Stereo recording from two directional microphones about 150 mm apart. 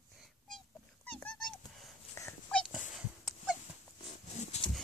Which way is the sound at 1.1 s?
5° left (ahead or behind).